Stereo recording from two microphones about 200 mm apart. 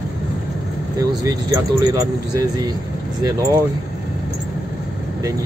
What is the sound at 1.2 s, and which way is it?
Speech, 15° right (ahead or behind).